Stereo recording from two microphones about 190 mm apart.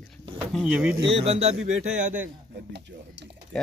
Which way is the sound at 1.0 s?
30° right (ahead or behind).